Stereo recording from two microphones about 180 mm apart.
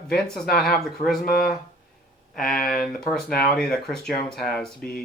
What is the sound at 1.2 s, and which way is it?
Speech, 50° left (ahead or behind).